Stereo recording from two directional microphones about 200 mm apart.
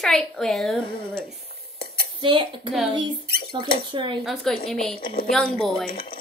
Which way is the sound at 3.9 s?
25° right (ahead or behind).